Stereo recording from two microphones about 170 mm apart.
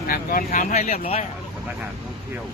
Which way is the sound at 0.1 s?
55° left (ahead or behind).